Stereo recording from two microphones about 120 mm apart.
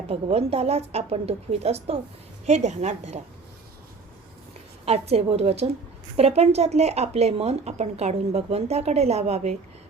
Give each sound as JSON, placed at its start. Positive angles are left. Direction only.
{"t": 0.1, "sound": "a woman's voice", "side_deg": -60}
{"t": 4.9, "sound": "speech", "side_deg": -60}